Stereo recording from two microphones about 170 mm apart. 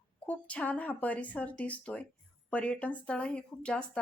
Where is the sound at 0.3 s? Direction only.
10° left (ahead or behind).